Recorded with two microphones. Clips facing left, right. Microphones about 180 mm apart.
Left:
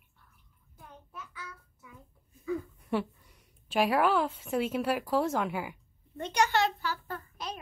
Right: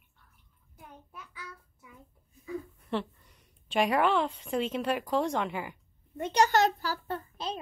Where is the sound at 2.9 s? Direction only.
10° left (ahead or behind).